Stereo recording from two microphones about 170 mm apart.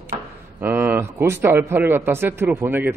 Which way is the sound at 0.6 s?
10° right (ahead or behind).